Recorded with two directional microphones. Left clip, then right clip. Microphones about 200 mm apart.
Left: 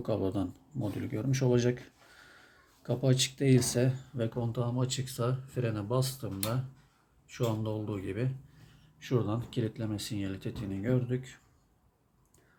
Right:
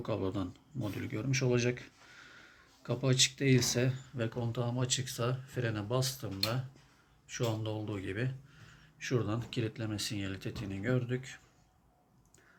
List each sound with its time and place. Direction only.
0.0 s speech: 20° left (ahead or behind)